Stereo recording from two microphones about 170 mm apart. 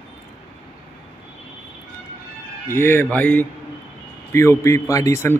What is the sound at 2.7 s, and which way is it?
A man's voice, 15° left (ahead or behind).